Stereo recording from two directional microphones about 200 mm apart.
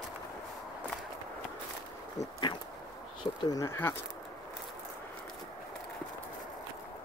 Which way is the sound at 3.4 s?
15° left (ahead or behind).